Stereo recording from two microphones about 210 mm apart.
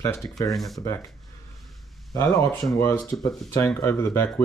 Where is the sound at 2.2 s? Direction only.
Centre (ahead or behind).